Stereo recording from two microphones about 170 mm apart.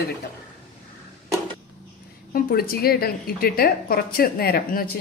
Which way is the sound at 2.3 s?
60° left (ahead or behind).